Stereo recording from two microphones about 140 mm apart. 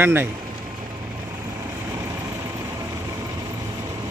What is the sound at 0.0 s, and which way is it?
Speech, 15° right (ahead or behind).